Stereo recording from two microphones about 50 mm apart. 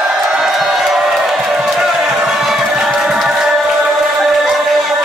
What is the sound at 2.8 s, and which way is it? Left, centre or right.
Chicken, centre.